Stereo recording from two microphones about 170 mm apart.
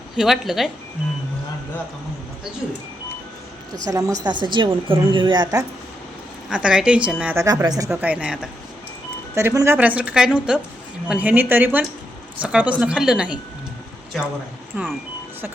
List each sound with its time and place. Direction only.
0.2 s a woman's voice: centre (ahead or behind)
3.8 s a woman's voice: 20° right (ahead or behind)
6.5 s a woman's voice: 5° right (ahead or behind)
7.4 s a woman's voice: 20° right (ahead or behind)
7.9 s a woman's voice: 5° right (ahead or behind)
9.3 s a woman's voice: 15° right (ahead or behind)
14.7 s a woman's voice: 10° right (ahead or behind)